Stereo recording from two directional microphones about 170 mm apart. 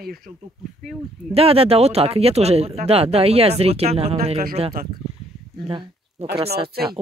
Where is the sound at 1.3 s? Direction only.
35° right (ahead or behind).